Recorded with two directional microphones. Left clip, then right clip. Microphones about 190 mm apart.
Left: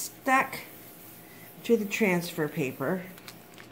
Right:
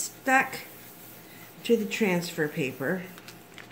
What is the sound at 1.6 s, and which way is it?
Speech, 30° left (ahead or behind).